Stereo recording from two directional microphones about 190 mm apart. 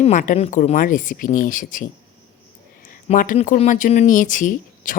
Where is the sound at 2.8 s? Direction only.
45° left (ahead or behind).